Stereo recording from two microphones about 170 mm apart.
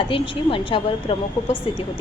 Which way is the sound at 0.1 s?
30° left (ahead or behind).